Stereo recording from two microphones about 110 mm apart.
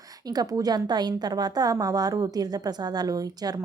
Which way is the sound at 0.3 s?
35° right (ahead or behind).